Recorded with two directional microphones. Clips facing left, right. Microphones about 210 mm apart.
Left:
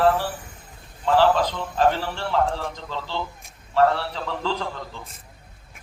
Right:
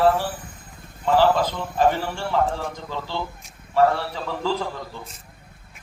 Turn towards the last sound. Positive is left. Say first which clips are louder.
# right 2 dB
turn(degrees=-10)  # may be behind; listen again after turning